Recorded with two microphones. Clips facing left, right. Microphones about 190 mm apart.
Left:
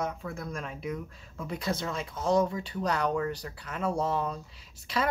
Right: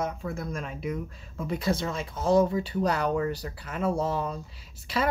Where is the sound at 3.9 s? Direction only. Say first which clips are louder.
Right 1 dB; 30° right (ahead or behind).